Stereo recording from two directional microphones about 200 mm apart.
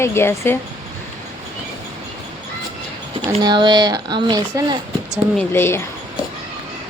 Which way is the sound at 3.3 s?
20° right (ahead or behind).